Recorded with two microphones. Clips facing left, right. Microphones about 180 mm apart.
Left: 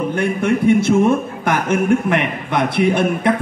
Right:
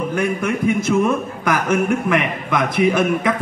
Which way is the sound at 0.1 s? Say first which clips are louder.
Left 3 dB; 30° left (ahead or behind).